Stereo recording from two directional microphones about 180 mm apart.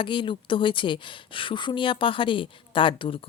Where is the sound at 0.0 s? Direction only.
25° left (ahead or behind).